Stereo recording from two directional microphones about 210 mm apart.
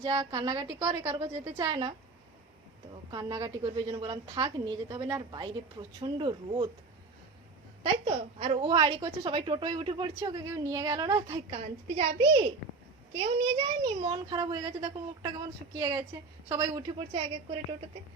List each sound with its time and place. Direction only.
0.0 s a woman's voice: 20° right (ahead or behind)
3.1 s a woman's voice: 20° right (ahead or behind)
8.0 s a woman's voice: 25° right (ahead or behind)
13.1 s a woman's voice: 25° right (ahead or behind)